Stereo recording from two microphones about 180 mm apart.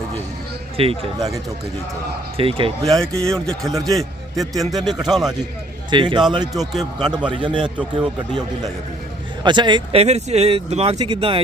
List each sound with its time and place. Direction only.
0.8 s speech: 30° right (ahead or behind)
2.4 s speech: 30° right (ahead or behind)
2.9 s a man's voice: 5° left (ahead or behind)
5.9 s speech: 25° right (ahead or behind)
6.6 s a man's voice: centre (ahead or behind)
7.3 s speech: 25° right (ahead or behind)
7.6 s speech: 5° right (ahead or behind)
9.4 s speech: 25° right (ahead or behind)